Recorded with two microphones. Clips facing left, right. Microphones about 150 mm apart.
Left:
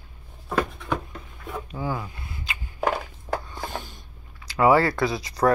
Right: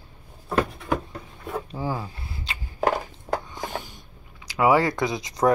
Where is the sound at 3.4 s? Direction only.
15° right (ahead or behind).